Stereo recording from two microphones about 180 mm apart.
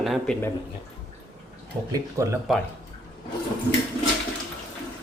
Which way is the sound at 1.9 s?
15° right (ahead or behind).